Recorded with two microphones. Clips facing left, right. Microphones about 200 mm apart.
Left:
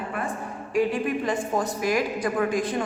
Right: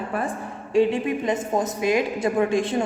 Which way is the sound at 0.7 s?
25° right (ahead or behind).